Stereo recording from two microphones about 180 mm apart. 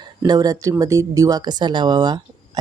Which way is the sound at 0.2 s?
20° right (ahead or behind).